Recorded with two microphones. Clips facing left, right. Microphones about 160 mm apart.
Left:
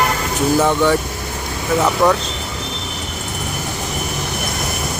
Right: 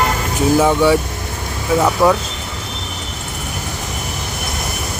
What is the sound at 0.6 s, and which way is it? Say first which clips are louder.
Speech: right 2 dB; 10° right (ahead or behind).